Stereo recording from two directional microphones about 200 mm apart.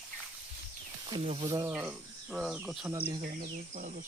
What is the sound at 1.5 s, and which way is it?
Speech, 15° right (ahead or behind).